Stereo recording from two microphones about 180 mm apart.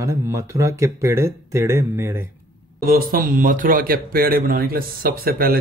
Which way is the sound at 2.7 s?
50° right (ahead or behind).